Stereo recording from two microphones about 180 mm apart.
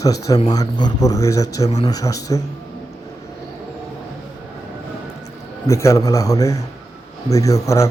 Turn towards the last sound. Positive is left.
turn(degrees=15)  # may be behind; listen again after turning